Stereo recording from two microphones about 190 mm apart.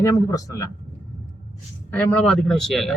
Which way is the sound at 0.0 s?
15° left (ahead or behind).